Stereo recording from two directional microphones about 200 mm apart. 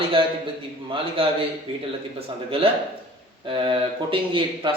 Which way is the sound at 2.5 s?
25° right (ahead or behind).